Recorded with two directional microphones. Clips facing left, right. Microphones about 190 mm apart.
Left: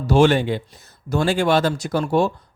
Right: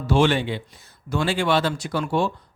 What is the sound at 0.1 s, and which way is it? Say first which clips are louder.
A man's voice: left 4 dB; 45° left (ahead or behind).